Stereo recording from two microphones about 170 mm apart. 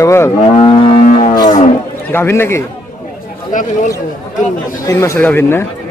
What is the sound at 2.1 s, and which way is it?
Speech, 15° left (ahead or behind).